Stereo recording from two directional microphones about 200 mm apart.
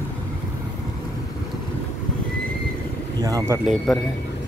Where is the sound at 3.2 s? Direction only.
15° right (ahead or behind).